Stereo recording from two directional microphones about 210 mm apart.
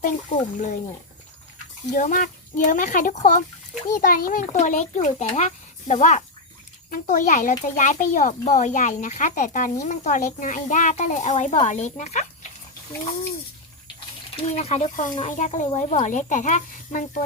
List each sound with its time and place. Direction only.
0.0 s speech: 35° left (ahead or behind)
1.9 s speech: 35° left (ahead or behind)
14.5 s speech: 30° left (ahead or behind)